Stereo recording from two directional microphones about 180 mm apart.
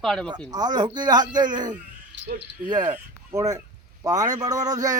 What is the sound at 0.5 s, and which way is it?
A man's voice, 20° right (ahead or behind).